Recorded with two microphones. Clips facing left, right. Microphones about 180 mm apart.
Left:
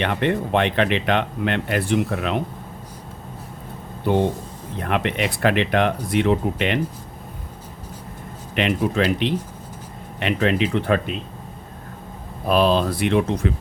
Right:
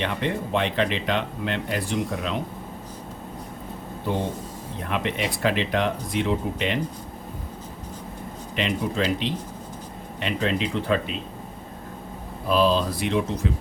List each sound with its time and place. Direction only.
0.0 s speech: 65° left (ahead or behind)
4.8 s speech: 65° left (ahead or behind)
8.5 s speech: 65° left (ahead or behind)
12.5 s speech: 60° left (ahead or behind)